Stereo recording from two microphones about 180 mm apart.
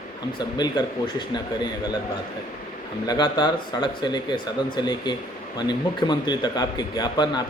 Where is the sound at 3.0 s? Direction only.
20° left (ahead or behind).